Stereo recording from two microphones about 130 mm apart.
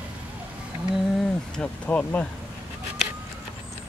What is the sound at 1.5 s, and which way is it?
Speech, 10° left (ahead or behind).